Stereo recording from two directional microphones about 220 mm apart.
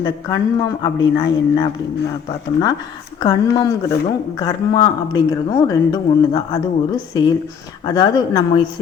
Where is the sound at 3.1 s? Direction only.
15° left (ahead or behind).